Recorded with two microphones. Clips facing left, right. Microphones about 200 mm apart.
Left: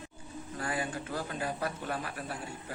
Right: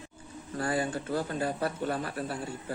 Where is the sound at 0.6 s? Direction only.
35° right (ahead or behind).